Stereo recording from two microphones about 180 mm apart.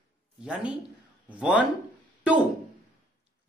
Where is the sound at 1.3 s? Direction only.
5° right (ahead or behind).